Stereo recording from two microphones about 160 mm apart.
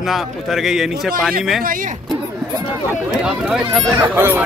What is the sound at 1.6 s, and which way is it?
Speech, 60° right (ahead or behind).